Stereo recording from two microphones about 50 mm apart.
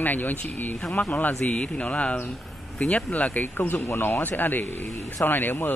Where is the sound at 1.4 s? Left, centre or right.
Left.